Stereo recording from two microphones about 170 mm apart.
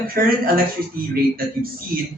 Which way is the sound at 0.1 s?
60° right (ahead or behind).